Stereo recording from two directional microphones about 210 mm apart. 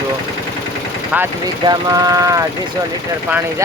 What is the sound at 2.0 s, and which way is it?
Speech, 15° right (ahead or behind).